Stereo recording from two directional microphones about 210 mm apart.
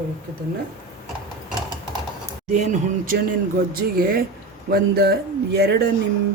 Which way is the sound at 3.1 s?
50° right (ahead or behind).